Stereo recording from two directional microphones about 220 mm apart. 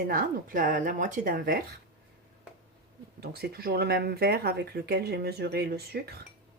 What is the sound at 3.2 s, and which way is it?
Speech, 45° right (ahead or behind).